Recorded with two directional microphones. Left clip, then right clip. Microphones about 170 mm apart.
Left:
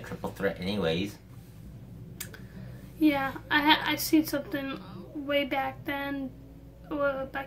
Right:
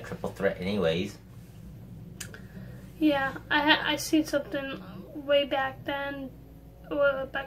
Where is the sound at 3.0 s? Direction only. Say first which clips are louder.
Even; 20° left (ahead or behind).